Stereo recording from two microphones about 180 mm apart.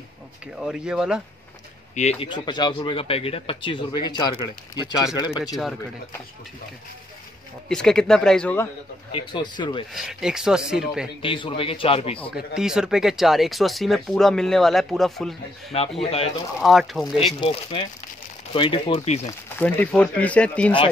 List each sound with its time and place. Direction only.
0.6 s speech: 5° right (ahead or behind)
2.0 s speech: 35° left (ahead or behind)
7.6 s speech: 5° left (ahead or behind)
9.1 s speech: 25° left (ahead or behind)
9.9 s speech: 5° right (ahead or behind)
11.2 s speech: 30° left (ahead or behind)
12.4 s speech: 5° right (ahead or behind)
16.0 s speech: 35° left (ahead or behind)
16.6 s speech: centre (ahead or behind)
17.4 s speech: 30° left (ahead or behind)
19.6 s speech: 10° left (ahead or behind)